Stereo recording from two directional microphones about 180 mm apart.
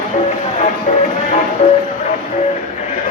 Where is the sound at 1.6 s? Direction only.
35° left (ahead or behind).